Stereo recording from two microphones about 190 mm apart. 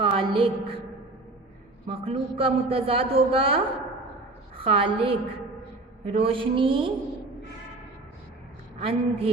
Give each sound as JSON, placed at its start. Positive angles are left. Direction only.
{"t": 0.0, "sound": "a woman's voice", "side_deg": -30}
{"t": 1.9, "sound": "a woman's voice", "side_deg": -30}
{"t": 8.8, "sound": "a woman's voice", "side_deg": -30}